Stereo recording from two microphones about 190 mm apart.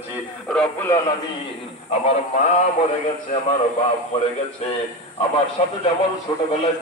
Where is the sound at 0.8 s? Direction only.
15° left (ahead or behind).